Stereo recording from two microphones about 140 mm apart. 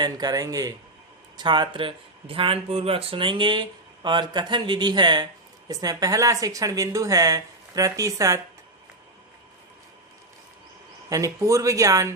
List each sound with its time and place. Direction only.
0.0 s speech: 30° right (ahead or behind)
11.1 s speech: 25° right (ahead or behind)